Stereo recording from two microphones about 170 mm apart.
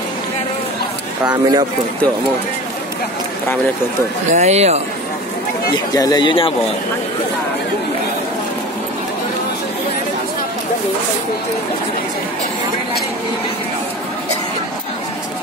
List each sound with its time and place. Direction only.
1.2 s speech: 25° right (ahead or behind)
4.3 s speech: 40° right (ahead or behind)
5.9 s speech: 25° left (ahead or behind)